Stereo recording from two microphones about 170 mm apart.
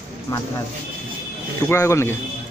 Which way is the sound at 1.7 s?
15° left (ahead or behind).